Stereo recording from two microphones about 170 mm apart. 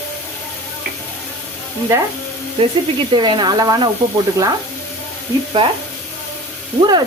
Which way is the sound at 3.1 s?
25° right (ahead or behind).